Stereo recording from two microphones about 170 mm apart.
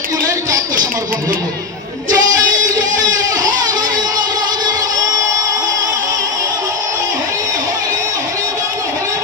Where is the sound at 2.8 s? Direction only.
50° right (ahead or behind).